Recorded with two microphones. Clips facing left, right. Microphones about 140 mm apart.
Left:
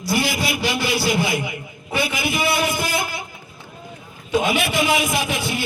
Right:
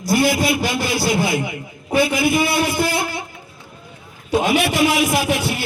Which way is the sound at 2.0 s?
30° right (ahead or behind).